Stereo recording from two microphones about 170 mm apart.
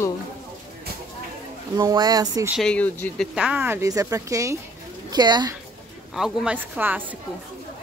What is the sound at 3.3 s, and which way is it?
Speech, 10° right (ahead or behind).